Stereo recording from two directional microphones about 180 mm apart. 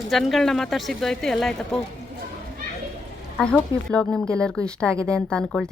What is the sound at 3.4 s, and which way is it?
Speech, 5° left (ahead or behind).